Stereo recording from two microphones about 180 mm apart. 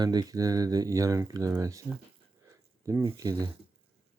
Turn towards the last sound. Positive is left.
turn(degrees=-20)  # may be behind; listen again after turning